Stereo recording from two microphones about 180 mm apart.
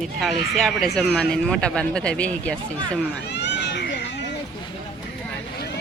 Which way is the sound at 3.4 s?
75° left (ahead or behind).